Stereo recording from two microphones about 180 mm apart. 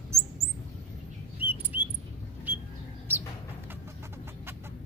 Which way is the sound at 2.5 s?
10° right (ahead or behind).